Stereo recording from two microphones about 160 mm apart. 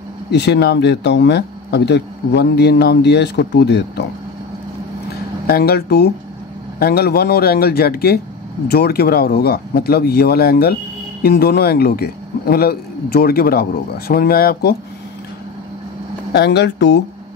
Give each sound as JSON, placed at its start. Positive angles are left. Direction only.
{"t": 0.3, "sound": "speech", "side_deg": 90}
{"t": 5.5, "sound": "speech", "side_deg": 75}
{"t": 6.8, "sound": "a man's voice", "side_deg": 75}
{"t": 16.3, "sound": "speech", "side_deg": 90}